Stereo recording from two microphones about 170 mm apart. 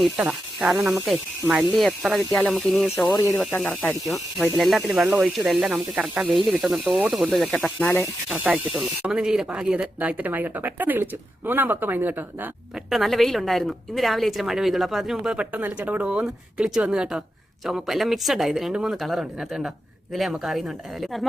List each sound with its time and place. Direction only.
0.0 s speech: 5° right (ahead or behind)
3.1 s speech: 20° left (ahead or behind)
3.3 s speech: 5° left (ahead or behind)
8.3 s speech: 5° right (ahead or behind)
12.9 s speech: centre (ahead or behind)